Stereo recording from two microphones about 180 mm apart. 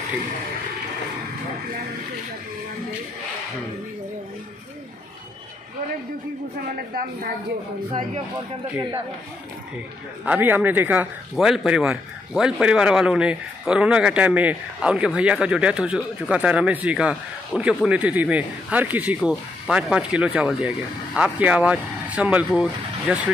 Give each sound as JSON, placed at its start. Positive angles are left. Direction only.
{"t": 6.7, "sound": "speech", "side_deg": -50}
{"t": 10.2, "sound": "speech", "side_deg": -10}